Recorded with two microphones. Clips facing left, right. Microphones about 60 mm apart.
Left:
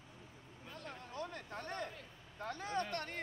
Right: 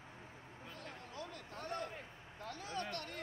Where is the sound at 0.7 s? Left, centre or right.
Left.